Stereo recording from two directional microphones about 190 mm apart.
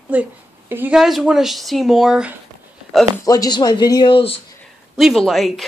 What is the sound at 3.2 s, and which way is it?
Speech, 20° left (ahead or behind).